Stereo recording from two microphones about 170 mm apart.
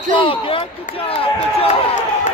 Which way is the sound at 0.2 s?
30° left (ahead or behind).